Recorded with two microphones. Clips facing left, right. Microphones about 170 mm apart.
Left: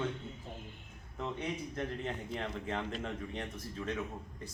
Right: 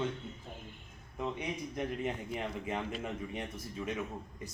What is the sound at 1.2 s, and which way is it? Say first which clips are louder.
A man's voice: right 1 dB; 10° right (ahead or behind).